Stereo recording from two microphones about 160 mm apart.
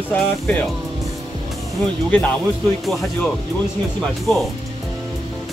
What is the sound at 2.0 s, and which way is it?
Speech, 10° left (ahead or behind).